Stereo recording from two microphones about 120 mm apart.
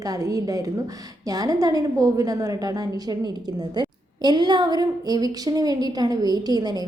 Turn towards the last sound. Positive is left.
turn(degrees=-35)  # may be behind; listen again after turning